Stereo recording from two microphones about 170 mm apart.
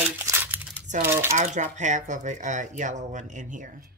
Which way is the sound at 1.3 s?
45° right (ahead or behind).